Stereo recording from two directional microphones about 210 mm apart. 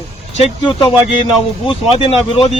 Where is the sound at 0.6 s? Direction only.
20° left (ahead or behind).